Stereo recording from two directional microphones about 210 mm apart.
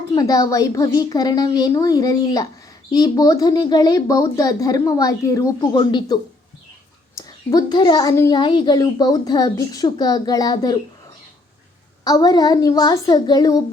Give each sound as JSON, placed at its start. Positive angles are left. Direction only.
{"t": 0.1, "sound": "speech", "side_deg": 15}
{"t": 7.2, "sound": "a woman's voice", "side_deg": 20}
{"t": 12.0, "sound": "a woman's voice", "side_deg": 20}